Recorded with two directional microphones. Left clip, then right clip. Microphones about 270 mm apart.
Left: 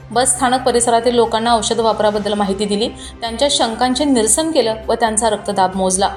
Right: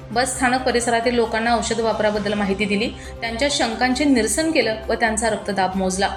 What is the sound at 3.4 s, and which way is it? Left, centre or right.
A woman's voice, centre.